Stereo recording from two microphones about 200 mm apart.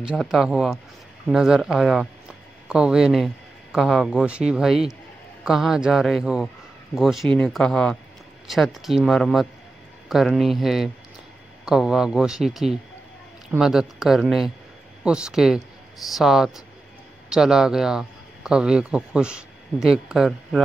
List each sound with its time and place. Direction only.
0.0 s a man's voice: 5° right (ahead or behind)